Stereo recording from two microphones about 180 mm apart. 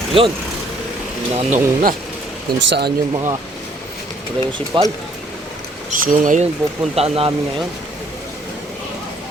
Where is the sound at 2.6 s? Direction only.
75° right (ahead or behind).